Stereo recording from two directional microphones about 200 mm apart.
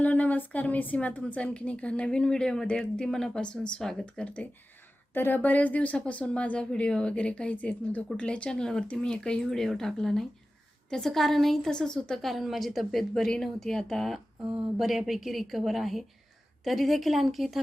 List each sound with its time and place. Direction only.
0.0 s a woman's voice: 10° left (ahead or behind)